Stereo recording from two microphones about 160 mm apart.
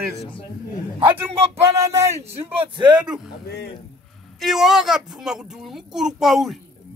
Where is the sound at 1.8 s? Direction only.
20° right (ahead or behind).